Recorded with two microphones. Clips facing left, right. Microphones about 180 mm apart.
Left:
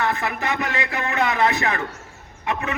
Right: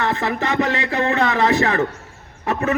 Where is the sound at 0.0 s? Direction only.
30° right (ahead or behind).